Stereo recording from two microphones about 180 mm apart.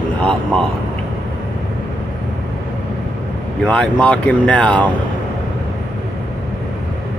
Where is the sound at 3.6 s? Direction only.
5° left (ahead or behind).